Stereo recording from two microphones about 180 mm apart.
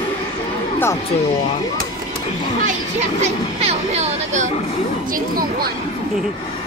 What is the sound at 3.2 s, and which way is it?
Speech, 35° right (ahead or behind).